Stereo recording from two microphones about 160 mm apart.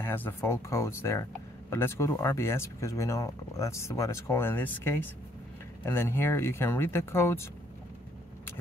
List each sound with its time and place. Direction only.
0.0 s speech: 15° left (ahead or behind)